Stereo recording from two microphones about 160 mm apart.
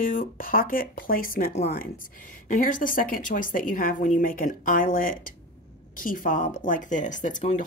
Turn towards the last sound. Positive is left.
turn(degrees=50)  # may be behind; listen again after turning